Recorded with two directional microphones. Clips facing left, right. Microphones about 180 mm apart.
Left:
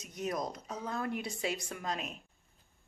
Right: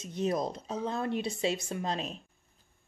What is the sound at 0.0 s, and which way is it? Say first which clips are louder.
Speech: right 6 dB; 30° right (ahead or behind).